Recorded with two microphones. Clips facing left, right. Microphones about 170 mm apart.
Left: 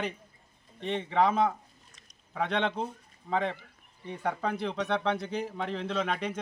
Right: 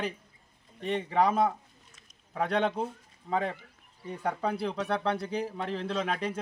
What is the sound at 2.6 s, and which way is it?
Speech, 5° right (ahead or behind).